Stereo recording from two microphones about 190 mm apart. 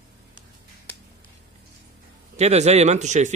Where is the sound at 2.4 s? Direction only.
35° right (ahead or behind).